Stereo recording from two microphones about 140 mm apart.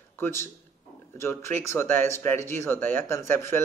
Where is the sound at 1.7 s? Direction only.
15° left (ahead or behind).